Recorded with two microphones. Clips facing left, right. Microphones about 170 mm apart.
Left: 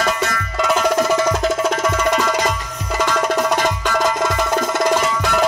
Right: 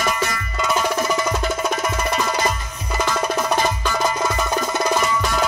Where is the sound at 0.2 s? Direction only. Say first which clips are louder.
Left 3 dB; 90° left.